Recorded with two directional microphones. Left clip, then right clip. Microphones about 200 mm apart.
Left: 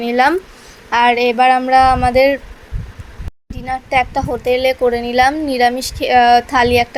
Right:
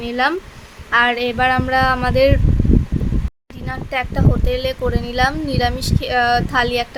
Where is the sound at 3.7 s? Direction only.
15° left (ahead or behind).